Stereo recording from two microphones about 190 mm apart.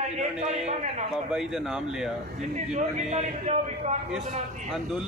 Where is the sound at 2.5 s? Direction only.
35° right (ahead or behind).